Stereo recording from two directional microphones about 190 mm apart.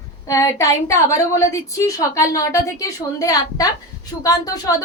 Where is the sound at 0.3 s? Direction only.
15° left (ahead or behind).